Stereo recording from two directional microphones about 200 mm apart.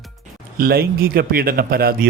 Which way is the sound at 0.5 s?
50° right (ahead or behind).